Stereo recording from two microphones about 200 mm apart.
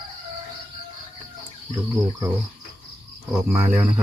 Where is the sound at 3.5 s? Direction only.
10° right (ahead or behind).